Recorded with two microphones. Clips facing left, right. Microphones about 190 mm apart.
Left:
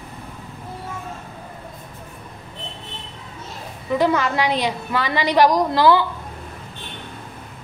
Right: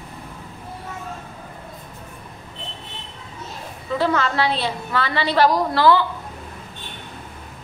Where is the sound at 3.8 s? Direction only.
15° left (ahead or behind).